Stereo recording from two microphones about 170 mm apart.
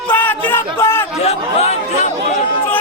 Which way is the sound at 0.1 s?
10° left (ahead or behind).